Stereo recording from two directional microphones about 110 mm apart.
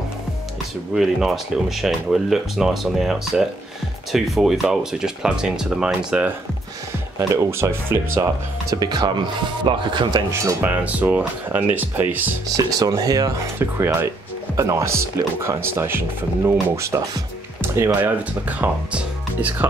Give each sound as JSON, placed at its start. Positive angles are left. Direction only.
{"t": 0.9, "sound": "speech", "side_deg": -5}
{"t": 7.2, "sound": "speech", "side_deg": -25}
{"t": 10.3, "sound": "speech", "side_deg": -30}
{"t": 10.6, "sound": "speech", "side_deg": -15}
{"t": 12.5, "sound": "speech", "side_deg": -35}
{"t": 13.6, "sound": "speech", "side_deg": -25}